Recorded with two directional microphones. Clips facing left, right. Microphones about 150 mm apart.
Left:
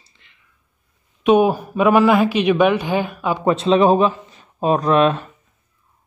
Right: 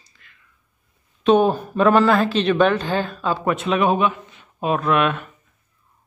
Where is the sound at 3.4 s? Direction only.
30° left (ahead or behind).